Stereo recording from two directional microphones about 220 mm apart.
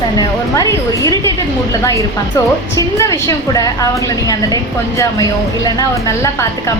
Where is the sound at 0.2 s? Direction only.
15° left (ahead or behind).